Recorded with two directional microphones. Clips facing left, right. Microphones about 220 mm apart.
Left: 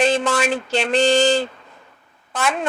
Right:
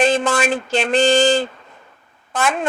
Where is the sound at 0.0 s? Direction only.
50° right (ahead or behind).